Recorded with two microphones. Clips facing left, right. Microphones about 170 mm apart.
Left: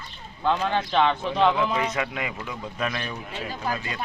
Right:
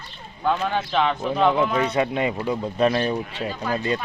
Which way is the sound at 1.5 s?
30° right (ahead or behind).